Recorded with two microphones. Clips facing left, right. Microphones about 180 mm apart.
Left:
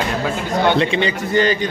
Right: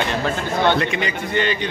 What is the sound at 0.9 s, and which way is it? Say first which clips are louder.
Speech: left 5 dB; 35° left (ahead or behind).